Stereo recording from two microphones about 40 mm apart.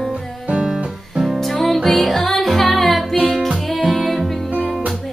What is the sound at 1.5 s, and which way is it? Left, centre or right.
Music, centre.